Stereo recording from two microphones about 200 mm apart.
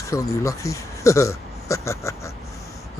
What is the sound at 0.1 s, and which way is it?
A man's voice, 15° left (ahead or behind).